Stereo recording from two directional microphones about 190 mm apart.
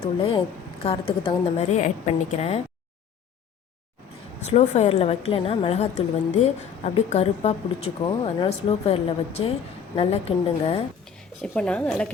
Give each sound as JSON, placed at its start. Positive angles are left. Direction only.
{"t": 0.0, "sound": "a woman's voice", "side_deg": 30}
{"t": 4.4, "sound": "a woman's voice", "side_deg": 35}
{"t": 11.0, "sound": "speech", "side_deg": 5}